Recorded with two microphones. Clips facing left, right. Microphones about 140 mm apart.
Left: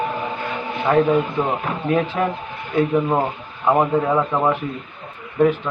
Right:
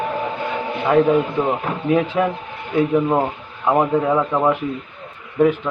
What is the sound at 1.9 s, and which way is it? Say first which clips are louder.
Speech: right 2 dB; 10° right (ahead or behind).